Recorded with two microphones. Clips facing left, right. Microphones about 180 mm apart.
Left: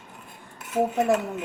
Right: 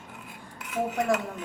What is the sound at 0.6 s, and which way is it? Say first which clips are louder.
Cutlery: left 5 dB; 25° left (ahead or behind).